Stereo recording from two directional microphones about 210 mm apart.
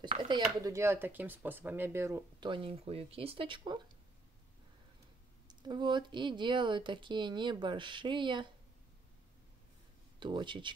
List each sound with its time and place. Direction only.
0.3 s speech: 15° right (ahead or behind)
5.5 s speech: 20° right (ahead or behind)
10.1 s speech: 20° right (ahead or behind)